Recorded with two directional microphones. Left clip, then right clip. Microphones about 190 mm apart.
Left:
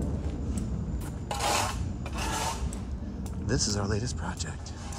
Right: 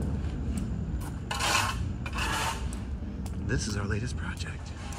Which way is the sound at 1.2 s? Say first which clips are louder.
Right 1 dB; 55° left (ahead or behind).